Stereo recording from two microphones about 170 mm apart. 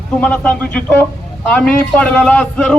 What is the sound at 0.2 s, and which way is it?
A man's voice, 5° left (ahead or behind).